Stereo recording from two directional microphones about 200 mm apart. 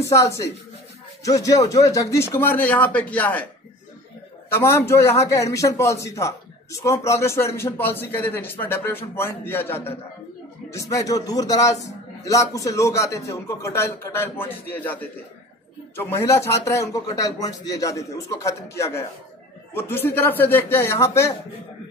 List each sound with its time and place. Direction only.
0.0 s a man's voice: 15° left (ahead or behind)
4.5 s a man's voice: 10° left (ahead or behind)